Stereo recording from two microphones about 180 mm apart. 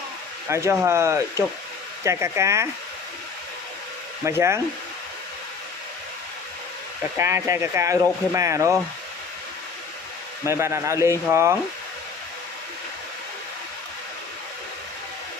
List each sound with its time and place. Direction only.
0.5 s speech: 15° right (ahead or behind)
4.2 s speech: 15° right (ahead or behind)
7.2 s speech: 15° right (ahead or behind)
10.4 s speech: 15° right (ahead or behind)